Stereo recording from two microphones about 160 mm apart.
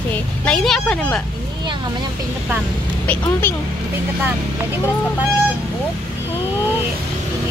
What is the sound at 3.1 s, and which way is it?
Speech, 15° left (ahead or behind).